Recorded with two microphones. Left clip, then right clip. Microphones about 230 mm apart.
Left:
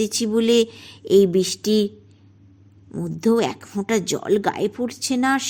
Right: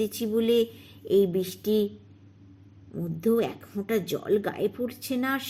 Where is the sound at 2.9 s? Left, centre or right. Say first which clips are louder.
Left 5 dB; left.